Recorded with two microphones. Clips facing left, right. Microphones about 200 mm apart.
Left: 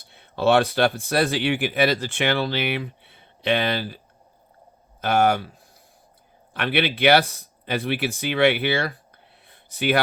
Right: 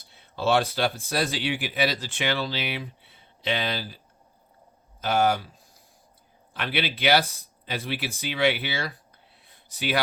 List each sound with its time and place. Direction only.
0.1 s speech: 60° left (ahead or behind)